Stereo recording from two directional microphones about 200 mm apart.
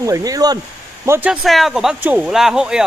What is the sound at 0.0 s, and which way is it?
Speech, 15° right (ahead or behind).